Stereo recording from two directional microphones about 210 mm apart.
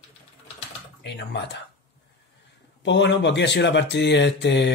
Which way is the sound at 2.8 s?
55° left (ahead or behind).